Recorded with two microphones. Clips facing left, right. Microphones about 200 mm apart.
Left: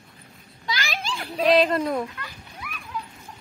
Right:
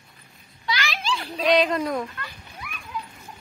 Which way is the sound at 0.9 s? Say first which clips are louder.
Right 3 dB; 50° left (ahead or behind).